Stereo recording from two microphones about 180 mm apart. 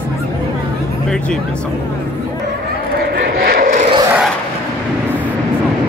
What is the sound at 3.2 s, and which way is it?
Vehicle, 50° right (ahead or behind).